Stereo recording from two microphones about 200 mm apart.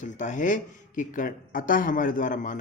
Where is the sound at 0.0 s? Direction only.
40° left (ahead or behind).